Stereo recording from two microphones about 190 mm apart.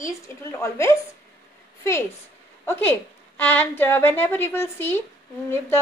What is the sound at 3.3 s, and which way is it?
A woman's voice, 10° left (ahead or behind).